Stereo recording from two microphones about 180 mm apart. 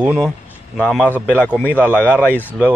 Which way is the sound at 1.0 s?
10° right (ahead or behind).